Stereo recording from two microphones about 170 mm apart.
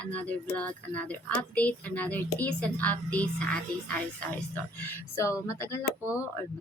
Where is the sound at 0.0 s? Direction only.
10° left (ahead or behind).